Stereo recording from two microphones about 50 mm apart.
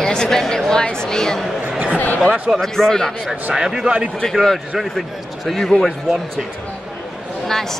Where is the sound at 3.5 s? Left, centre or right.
Centre.